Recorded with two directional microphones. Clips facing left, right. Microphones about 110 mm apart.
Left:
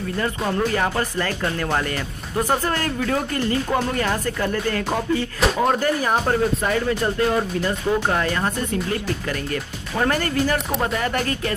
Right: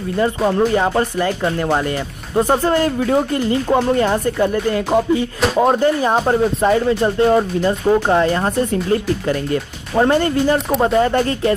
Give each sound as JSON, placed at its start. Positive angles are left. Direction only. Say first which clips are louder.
{"t": 0.2, "sound": "speech", "louder": "right 8 dB", "side_deg": -25}